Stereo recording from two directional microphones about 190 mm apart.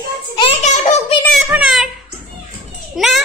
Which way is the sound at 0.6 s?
40° left (ahead or behind).